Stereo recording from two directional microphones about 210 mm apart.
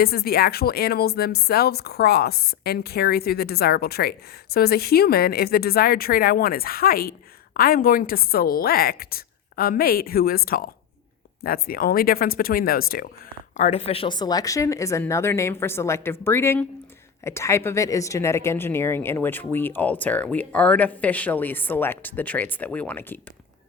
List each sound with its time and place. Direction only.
0.0 s speech: 45° left (ahead or behind)
13.6 s speech: 30° left (ahead or behind); by 23.1 s 10° left (ahead or behind)